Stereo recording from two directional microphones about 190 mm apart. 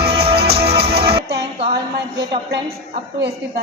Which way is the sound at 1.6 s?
60° right (ahead or behind).